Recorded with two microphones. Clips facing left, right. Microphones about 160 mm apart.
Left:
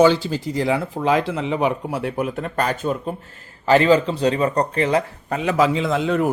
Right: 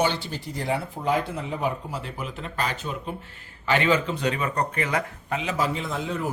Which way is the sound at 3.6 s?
35° left (ahead or behind).